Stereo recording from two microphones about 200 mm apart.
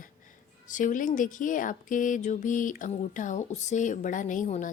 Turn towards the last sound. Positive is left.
turn(degrees=35)  # may be behind; listen again after turning